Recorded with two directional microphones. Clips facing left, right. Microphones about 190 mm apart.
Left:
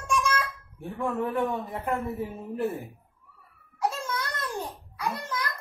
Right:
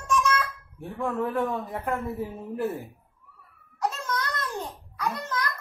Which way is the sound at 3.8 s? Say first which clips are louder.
Even; 10° left (ahead or behind).